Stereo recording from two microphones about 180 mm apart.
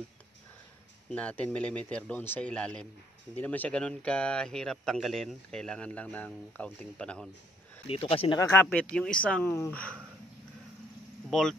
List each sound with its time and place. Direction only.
1.1 s a man's voice: 5° left (ahead or behind)
7.8 s speech: 30° left (ahead or behind)
8.4 s a man's voice: 15° left (ahead or behind)
11.2 s speech: 5° left (ahead or behind)